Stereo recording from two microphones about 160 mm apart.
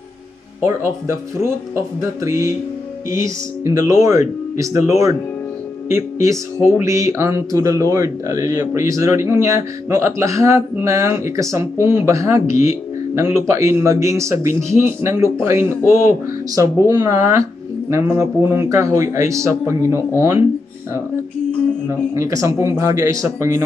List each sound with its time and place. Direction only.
0.7 s speech: 15° right (ahead or behind)
22.1 s speech: 20° right (ahead or behind)